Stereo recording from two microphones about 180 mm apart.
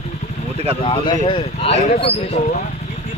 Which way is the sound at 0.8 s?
30° left (ahead or behind).